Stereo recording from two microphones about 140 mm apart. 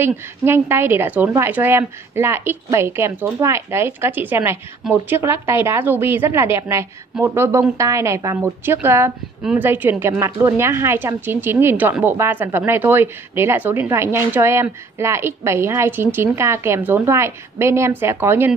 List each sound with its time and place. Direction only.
0.0 s a woman's voice: 15° right (ahead or behind)